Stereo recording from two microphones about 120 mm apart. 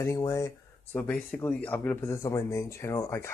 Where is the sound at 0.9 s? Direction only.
10° left (ahead or behind).